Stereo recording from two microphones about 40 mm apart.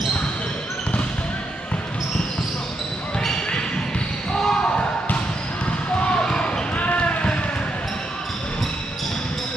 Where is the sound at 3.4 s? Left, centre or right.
Left.